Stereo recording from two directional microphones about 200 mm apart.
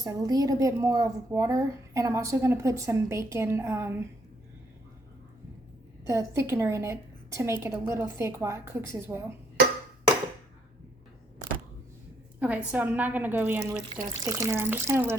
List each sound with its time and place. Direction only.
0.0 s a woman's voice: 20° right (ahead or behind)
6.1 s a woman's voice: 15° right (ahead or behind)
12.4 s a woman's voice: 5° right (ahead or behind)